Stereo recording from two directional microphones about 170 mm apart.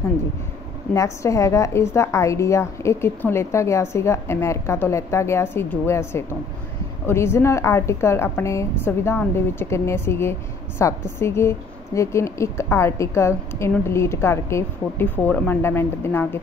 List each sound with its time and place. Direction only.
0.9 s a woman's voice: 20° left (ahead or behind)